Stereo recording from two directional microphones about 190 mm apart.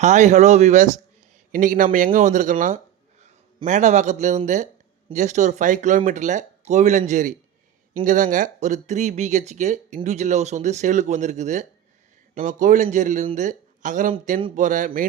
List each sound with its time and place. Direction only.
0.0 s speech: 40° right (ahead or behind)